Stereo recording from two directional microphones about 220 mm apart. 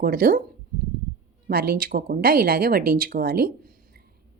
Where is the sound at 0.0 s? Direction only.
40° right (ahead or behind).